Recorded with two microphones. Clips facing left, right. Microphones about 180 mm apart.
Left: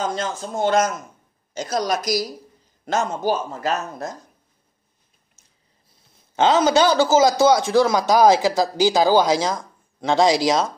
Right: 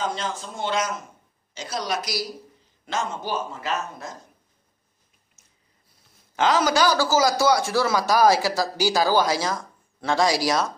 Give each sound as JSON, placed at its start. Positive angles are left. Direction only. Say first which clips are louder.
{"t": 0.0, "sound": "a man's voice", "louder": "left 3 dB", "side_deg": 45}
{"t": 6.3, "sound": "a man's voice", "louder": "left 4 dB", "side_deg": 25}